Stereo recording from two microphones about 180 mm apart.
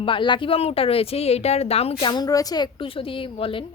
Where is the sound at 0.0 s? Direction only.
25° left (ahead or behind).